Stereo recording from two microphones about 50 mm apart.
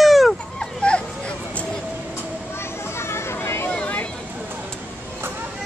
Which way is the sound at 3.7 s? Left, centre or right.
Left.